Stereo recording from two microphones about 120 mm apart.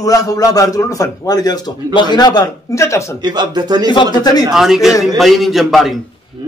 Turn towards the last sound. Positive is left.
turn(degrees=0)  # may be behind; listen again after turning